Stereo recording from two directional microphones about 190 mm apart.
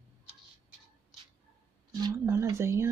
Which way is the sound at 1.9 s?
20° right (ahead or behind).